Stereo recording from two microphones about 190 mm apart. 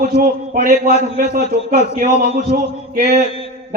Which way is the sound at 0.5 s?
45° right (ahead or behind).